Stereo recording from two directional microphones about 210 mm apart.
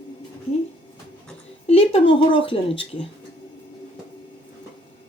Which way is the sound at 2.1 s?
25° left (ahead or behind).